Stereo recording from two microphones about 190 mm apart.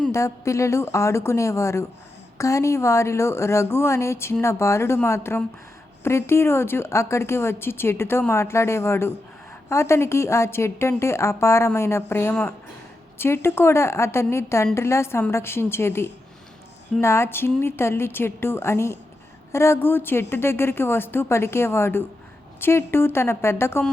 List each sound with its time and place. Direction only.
0.1 s a woman's voice: 15° left (ahead or behind)